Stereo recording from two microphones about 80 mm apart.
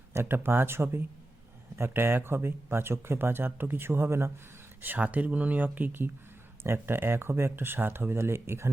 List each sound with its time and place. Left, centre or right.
0.1 s speech: right
4.8 s speech: right